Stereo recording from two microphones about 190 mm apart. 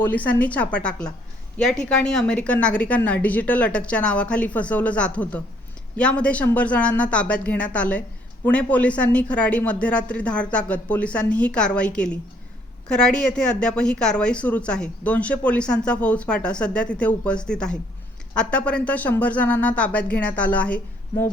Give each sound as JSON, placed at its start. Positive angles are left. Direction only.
{"t": 0.0, "sound": "a woman's voice", "side_deg": 10}